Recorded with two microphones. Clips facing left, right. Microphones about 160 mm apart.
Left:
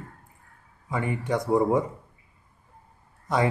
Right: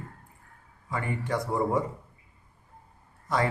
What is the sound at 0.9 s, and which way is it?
Speech, 20° left (ahead or behind).